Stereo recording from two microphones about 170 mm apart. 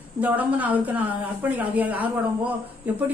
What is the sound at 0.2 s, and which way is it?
A woman's voice, 10° right (ahead or behind).